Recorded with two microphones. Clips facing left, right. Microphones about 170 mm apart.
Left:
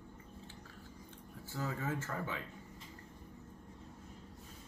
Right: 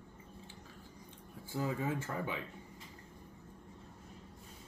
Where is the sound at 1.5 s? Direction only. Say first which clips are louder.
Right 3 dB; 15° right (ahead or behind).